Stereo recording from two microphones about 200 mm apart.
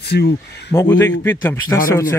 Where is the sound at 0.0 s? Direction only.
55° left (ahead or behind).